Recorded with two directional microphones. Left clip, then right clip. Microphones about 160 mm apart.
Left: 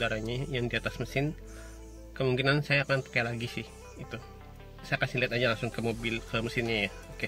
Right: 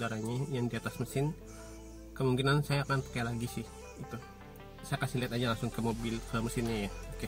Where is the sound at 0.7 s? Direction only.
20° left (ahead or behind).